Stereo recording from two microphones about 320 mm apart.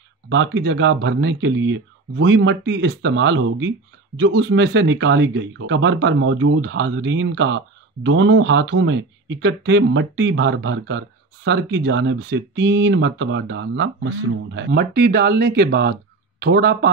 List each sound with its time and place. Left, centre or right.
0.3 s speech: right